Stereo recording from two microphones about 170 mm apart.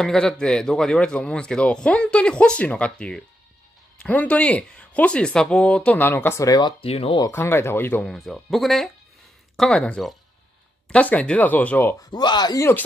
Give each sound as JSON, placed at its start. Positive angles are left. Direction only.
{"t": 0.0, "sound": "a man's voice", "side_deg": 5}
{"t": 7.2, "sound": "a man's voice", "side_deg": 15}
{"t": 12.1, "sound": "speech", "side_deg": 25}